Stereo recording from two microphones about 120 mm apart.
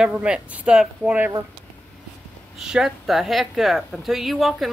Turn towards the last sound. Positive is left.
turn(degrees=0)  # may be behind; listen again after turning